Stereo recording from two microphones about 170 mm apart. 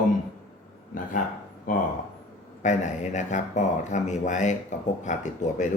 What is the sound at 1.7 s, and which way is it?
A man's voice, 55° left (ahead or behind).